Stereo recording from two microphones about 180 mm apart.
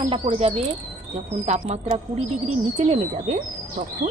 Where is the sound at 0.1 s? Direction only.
30° right (ahead or behind).